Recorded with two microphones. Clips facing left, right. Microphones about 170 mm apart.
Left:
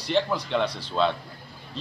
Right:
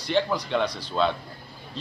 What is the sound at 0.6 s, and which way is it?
Speech, 30° left (ahead or behind).